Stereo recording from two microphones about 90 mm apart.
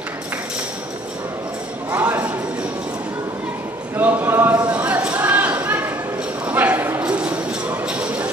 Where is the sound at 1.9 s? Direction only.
20° right (ahead or behind).